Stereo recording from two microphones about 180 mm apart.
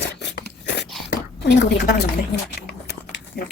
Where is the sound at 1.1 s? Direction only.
75° left (ahead or behind).